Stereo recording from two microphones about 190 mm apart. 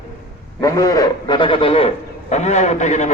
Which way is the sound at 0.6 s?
20° left (ahead or behind).